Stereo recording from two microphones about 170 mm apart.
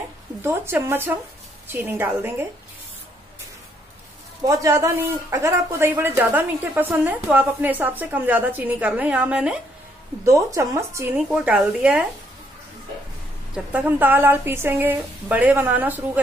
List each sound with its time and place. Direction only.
0.4 s speech: 15° right (ahead or behind)
4.5 s speech: 20° right (ahead or behind)
10.2 s speech: 20° right (ahead or behind)
11.1 s speech: 5° right (ahead or behind)
13.7 s speech: 10° right (ahead or behind)